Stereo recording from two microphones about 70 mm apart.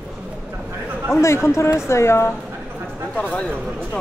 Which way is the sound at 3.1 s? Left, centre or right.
Left.